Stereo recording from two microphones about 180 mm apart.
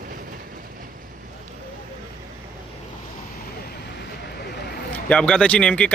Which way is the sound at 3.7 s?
65° left (ahead or behind).